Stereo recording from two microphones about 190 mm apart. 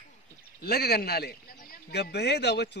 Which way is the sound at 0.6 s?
55° left (ahead or behind).